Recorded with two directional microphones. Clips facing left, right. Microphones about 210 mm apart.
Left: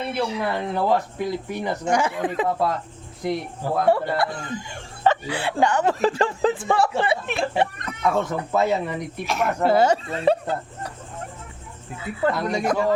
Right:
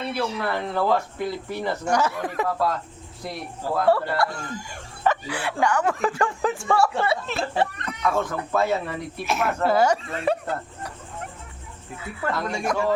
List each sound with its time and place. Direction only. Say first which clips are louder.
0.2 s speech: left 2 dB; 15° left (ahead or behind)
3.8 s speech: left 1 dB; 20° left (ahead or behind)
9.2 s speech: even; 5° right (ahead or behind)
9.6 s speech: left 2 dB; 25° left (ahead or behind)
12.0 s speech: left 5 dB; 20° left (ahead or behind)